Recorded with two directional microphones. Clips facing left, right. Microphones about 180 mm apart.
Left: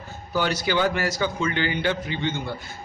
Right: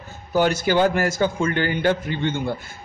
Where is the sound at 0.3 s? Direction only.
50° right (ahead or behind).